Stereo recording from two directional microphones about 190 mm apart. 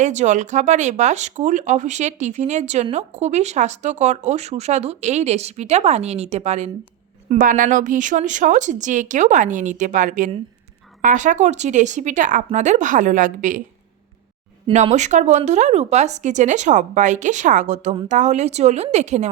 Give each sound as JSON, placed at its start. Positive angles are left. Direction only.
{"t": 0.0, "sound": "speech", "side_deg": -40}
{"t": 14.7, "sound": "speech", "side_deg": -40}